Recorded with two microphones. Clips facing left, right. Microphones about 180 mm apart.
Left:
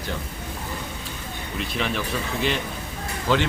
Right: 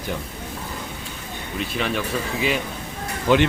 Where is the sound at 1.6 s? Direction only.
Centre (ahead or behind).